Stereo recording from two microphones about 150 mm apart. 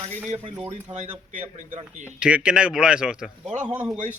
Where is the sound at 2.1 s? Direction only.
5° right (ahead or behind).